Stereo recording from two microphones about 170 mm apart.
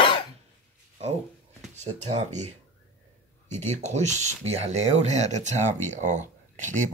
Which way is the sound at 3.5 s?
45° right (ahead or behind).